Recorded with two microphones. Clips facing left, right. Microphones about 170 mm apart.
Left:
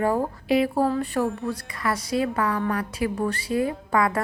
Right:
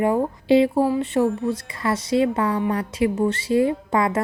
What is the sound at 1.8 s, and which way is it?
A woman's voice, 25° right (ahead or behind).